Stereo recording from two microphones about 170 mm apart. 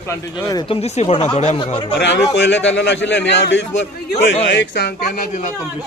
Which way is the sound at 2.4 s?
90° left.